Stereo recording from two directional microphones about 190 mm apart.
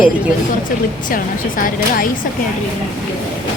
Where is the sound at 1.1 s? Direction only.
45° left (ahead or behind).